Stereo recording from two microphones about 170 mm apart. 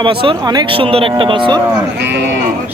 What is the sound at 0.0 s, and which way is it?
Speech, 30° right (ahead or behind).